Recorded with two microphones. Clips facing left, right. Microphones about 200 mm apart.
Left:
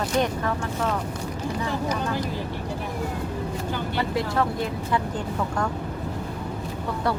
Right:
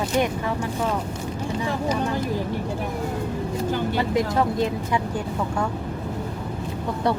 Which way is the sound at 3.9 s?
20° right (ahead or behind).